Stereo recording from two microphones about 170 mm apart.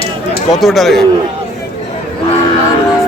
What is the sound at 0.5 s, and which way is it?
Speech, centre (ahead or behind).